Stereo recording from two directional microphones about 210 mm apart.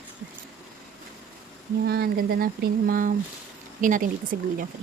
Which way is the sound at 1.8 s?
45° right (ahead or behind).